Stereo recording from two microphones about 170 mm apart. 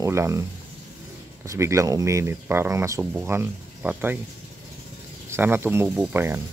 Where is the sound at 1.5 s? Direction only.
15° right (ahead or behind).